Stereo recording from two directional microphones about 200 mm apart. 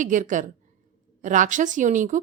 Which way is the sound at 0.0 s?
40° right (ahead or behind).